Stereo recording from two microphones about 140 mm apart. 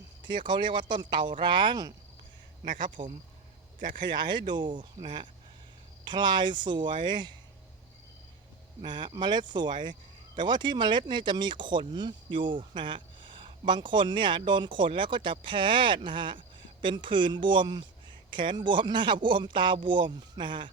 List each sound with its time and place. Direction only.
0.3 s speech: 35° right (ahead or behind)
2.6 s speech: 70° right (ahead or behind)
4.2 s speech: 30° right (ahead or behind)
8.8 s speech: 35° right (ahead or behind)